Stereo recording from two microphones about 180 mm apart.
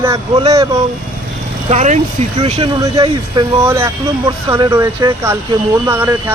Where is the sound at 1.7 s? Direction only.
40° right (ahead or behind).